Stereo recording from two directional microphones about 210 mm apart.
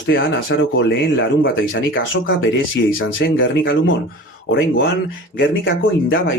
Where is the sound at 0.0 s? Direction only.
65° left (ahead or behind).